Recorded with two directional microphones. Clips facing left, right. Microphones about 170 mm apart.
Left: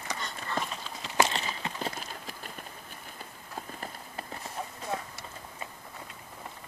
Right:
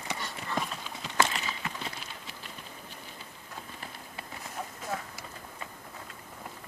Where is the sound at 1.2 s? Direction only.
30° left (ahead or behind).